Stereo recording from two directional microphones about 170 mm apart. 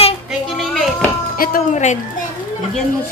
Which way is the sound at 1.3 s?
55° left (ahead or behind).